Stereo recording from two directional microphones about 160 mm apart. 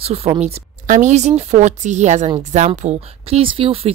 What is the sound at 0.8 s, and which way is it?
A woman's voice, 50° right (ahead or behind).